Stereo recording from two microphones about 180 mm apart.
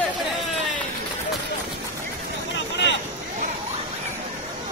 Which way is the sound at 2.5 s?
75° left (ahead or behind).